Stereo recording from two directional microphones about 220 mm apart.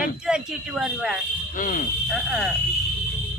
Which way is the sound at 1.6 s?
40° left (ahead or behind).